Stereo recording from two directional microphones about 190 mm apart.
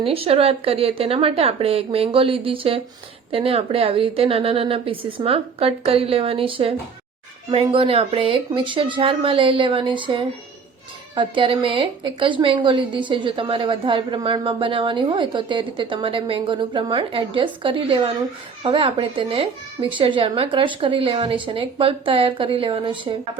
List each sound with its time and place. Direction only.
0.0 s a woman's voice: 30° right (ahead or behind)